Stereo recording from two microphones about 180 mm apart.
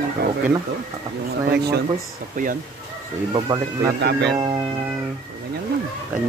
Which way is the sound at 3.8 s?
65° right (ahead or behind).